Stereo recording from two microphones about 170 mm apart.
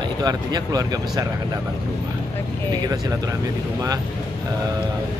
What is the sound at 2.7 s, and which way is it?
Speech, 20° right (ahead or behind).